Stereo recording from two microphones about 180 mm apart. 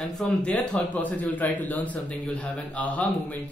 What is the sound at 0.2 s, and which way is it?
A man's voice, 5° left (ahead or behind).